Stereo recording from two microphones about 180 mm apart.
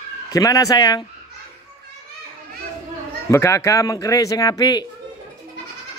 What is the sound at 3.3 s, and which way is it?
A man's voice, 15° left (ahead or behind).